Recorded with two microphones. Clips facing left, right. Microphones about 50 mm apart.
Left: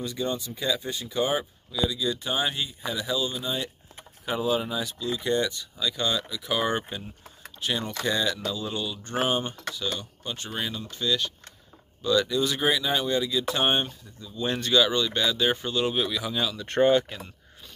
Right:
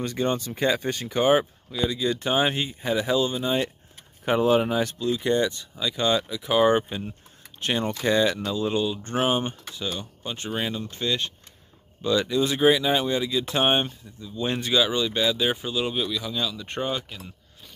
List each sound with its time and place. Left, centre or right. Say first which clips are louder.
0.0 s speech: right 4 dB; right
4.2 s speech: right 6 dB; right
4.9 s speech: right 3 dB; right
7.6 s speech: right 4 dB; right
8.0 s speech: right 5 dB; right
10.8 s speech: even; right; by 16.6 s centre